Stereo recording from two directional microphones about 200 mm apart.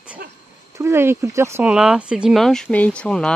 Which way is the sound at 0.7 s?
15° right (ahead or behind).